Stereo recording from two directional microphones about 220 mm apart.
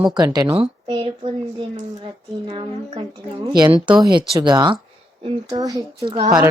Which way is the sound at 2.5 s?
20° right (ahead or behind).